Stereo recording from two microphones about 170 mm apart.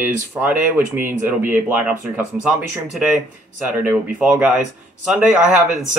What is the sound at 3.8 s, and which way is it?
Speech, 10° right (ahead or behind).